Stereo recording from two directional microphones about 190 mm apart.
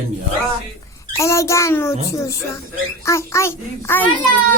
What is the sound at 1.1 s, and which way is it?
A child's voice, 15° left (ahead or behind).